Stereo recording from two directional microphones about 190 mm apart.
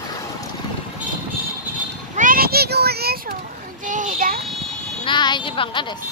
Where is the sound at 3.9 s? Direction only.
45° right (ahead or behind).